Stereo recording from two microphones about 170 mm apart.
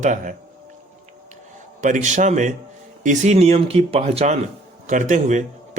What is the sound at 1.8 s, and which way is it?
Speech, 45° right (ahead or behind).